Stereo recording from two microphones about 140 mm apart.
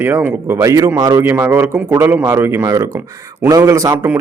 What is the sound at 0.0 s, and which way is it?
A man's voice, 15° right (ahead or behind).